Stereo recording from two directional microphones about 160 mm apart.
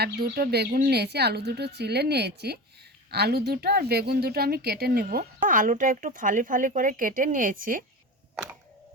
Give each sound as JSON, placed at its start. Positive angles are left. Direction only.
{"t": 0.0, "sound": "speech", "side_deg": -80}
{"t": 0.9, "sound": "a woman's voice", "side_deg": -90}